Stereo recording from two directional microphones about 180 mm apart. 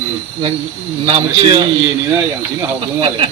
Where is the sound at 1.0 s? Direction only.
30° right (ahead or behind).